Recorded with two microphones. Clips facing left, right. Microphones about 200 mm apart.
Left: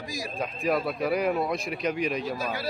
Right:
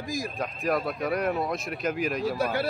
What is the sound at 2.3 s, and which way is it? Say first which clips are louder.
Speech: right 4 dB; 60° right (ahead or behind).